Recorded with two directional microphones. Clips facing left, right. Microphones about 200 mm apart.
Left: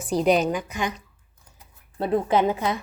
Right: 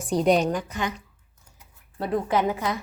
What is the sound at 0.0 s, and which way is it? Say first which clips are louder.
Speech: even; centre (ahead or behind).